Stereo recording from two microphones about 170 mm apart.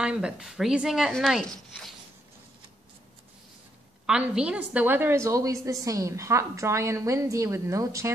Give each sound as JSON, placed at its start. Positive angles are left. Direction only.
{"t": 0.0, "sound": "speech", "side_deg": -5}
{"t": 4.0, "sound": "a woman's voice", "side_deg": -5}